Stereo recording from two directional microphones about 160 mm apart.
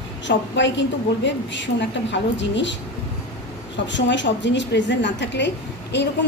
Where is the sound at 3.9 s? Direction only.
90° left.